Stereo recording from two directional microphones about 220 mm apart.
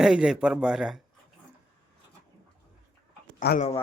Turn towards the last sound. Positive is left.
turn(degrees=45)  # may be behind; listen again after turning